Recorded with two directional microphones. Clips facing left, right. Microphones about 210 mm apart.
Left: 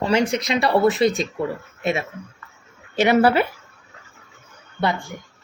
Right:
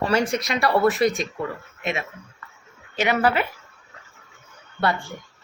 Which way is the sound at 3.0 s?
40° left (ahead or behind).